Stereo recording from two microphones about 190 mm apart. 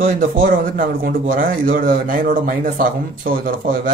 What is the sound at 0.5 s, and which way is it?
A man's voice, 45° right (ahead or behind).